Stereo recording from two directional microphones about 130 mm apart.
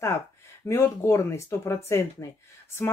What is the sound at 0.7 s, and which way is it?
Speech, 20° left (ahead or behind).